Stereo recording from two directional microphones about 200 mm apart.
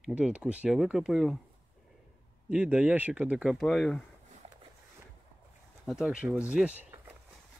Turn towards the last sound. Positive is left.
turn(degrees=-10)  # may be behind; listen again after turning